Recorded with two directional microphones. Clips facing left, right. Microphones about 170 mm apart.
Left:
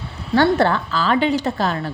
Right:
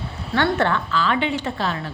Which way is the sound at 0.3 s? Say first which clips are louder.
Left 4 dB; 35° left (ahead or behind).